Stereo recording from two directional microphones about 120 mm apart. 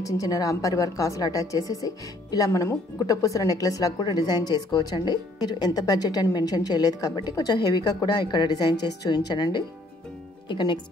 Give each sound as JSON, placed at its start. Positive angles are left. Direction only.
{"t": 0.0, "sound": "a woman's voice", "side_deg": 30}